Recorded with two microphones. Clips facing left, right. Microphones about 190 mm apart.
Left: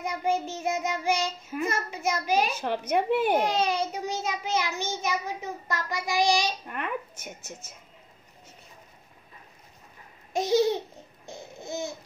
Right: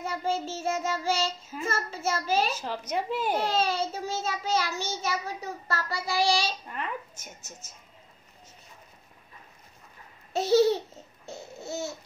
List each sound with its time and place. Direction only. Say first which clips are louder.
0.0 s a child's voice: left 2 dB; 15° left (ahead or behind)
2.5 s a woman's voice: left 5 dB; 60° left (ahead or behind)
3.3 s a child's voice: left 2 dB; 15° left (ahead or behind)
6.7 s a woman's voice: left 3 dB; 60° left (ahead or behind)
10.3 s a child's voice: right 2 dB; 15° left (ahead or behind)
11.2 s laughter: right 1 dB; 15° left (ahead or behind)